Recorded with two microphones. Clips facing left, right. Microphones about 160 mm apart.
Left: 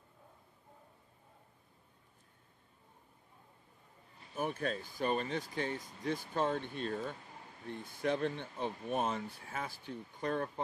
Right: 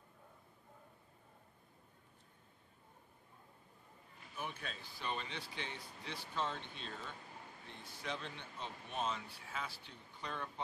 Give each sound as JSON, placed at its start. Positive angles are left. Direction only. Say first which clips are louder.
{"t": 4.4, "sound": "speech", "louder": "left 10 dB", "side_deg": 50}